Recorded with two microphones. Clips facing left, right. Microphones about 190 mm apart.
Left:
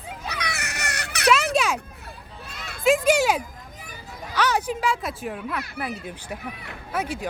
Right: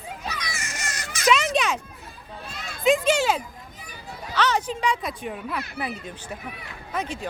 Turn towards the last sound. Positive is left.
turn(degrees=10)  # may be behind; listen again after turning